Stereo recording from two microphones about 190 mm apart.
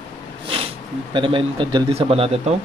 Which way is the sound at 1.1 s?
25° right (ahead or behind).